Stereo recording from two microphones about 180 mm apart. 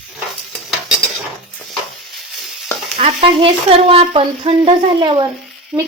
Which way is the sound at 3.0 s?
30° right (ahead or behind).